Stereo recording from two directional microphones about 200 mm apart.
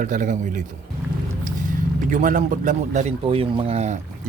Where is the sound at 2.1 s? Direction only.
40° right (ahead or behind).